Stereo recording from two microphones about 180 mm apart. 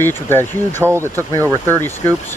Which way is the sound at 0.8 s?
15° right (ahead or behind).